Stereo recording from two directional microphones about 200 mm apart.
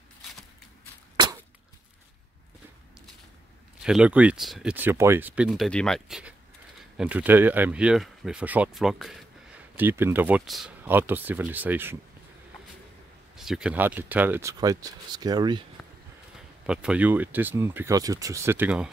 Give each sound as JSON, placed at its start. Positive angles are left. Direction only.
{"t": 1.2, "sound": "a sound", "side_deg": -20}
{"t": 3.8, "sound": "speech", "side_deg": -5}
{"t": 13.4, "sound": "speech", "side_deg": -5}
{"t": 16.6, "sound": "speech", "side_deg": -5}